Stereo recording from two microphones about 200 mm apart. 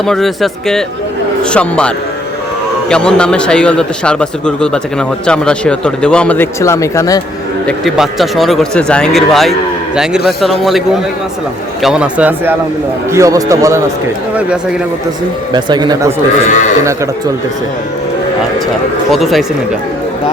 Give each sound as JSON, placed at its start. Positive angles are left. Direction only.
{"t": 0.0, "sound": "a man's voice", "side_deg": 0}
{"t": 2.9, "sound": "a man's voice", "side_deg": 5}
{"t": 7.7, "sound": "a man's voice", "side_deg": 0}
{"t": 15.5, "sound": "speech", "side_deg": -20}
{"t": 19.1, "sound": "a man's voice", "side_deg": 0}